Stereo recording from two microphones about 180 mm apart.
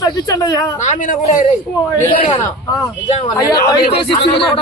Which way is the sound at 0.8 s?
45° left (ahead or behind).